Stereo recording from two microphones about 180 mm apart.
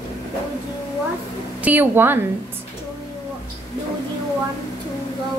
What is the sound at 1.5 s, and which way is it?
Speech, 10° right (ahead or behind).